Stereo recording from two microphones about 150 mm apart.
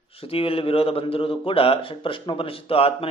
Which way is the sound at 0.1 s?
40° left (ahead or behind).